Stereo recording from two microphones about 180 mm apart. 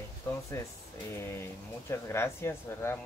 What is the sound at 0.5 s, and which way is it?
Speech, 15° left (ahead or behind).